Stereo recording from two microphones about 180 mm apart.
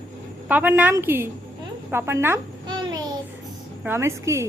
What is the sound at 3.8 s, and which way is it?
Speech, 15° right (ahead or behind).